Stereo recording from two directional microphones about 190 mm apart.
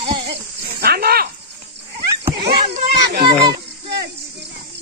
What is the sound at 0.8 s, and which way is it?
Snake, 55° right (ahead or behind).